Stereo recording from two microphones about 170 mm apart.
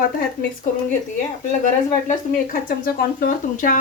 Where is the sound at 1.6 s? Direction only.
50° left (ahead or behind).